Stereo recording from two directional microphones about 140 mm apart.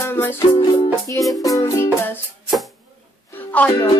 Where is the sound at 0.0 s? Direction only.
15° left (ahead or behind).